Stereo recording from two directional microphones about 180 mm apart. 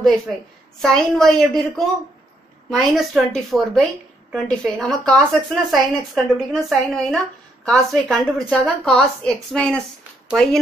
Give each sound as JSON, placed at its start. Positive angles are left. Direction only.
{"t": 0.3, "sound": "a woman's voice", "side_deg": 0}
{"t": 2.8, "sound": "a woman's voice", "side_deg": 0}